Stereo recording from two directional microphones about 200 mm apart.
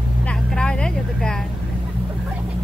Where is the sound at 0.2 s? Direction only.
5° left (ahead or behind).